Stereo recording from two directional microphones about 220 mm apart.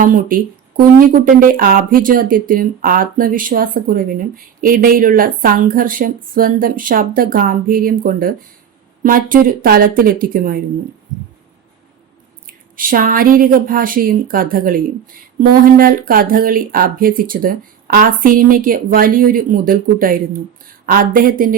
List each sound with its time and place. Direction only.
0.0 s speech: 40° right (ahead or behind)
12.5 s speech: 40° right (ahead or behind)